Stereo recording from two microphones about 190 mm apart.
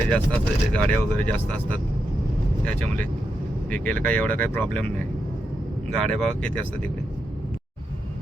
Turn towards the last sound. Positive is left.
turn(degrees=5)  # may be behind; listen again after turning